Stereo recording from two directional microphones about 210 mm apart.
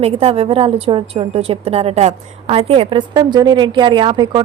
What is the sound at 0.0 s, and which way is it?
A woman's voice, 30° right (ahead or behind).